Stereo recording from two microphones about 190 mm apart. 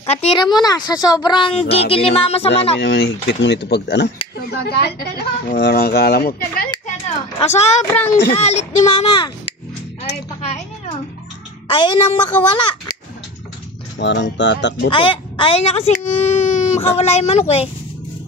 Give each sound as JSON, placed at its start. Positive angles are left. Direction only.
{"t": 0.0, "sound": "speech", "side_deg": 35}
{"t": 2.8, "sound": "speech", "side_deg": 65}
{"t": 7.3, "sound": "speech", "side_deg": 35}
{"t": 7.8, "sound": "speech", "side_deg": 15}
{"t": 8.3, "sound": "speech", "side_deg": 35}
{"t": 11.6, "sound": "a child's voice", "side_deg": 25}
{"t": 13.9, "sound": "speech", "side_deg": 70}
{"t": 14.9, "sound": "speech", "side_deg": 25}